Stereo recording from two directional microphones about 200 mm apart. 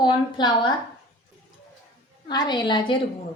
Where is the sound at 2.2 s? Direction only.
20° left (ahead or behind).